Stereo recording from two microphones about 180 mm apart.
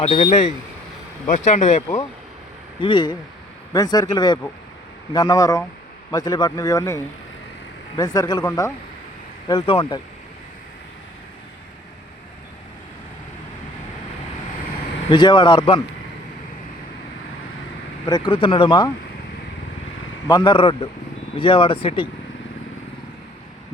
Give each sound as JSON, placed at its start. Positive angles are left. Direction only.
{"t": 0.0, "sound": "speech", "side_deg": 35}
{"t": 2.8, "sound": "a man's voice", "side_deg": 25}
{"t": 15.1, "sound": "a man's voice", "side_deg": 25}
{"t": 18.0, "sound": "a man's voice", "side_deg": 25}
{"t": 20.2, "sound": "a man's voice", "side_deg": 25}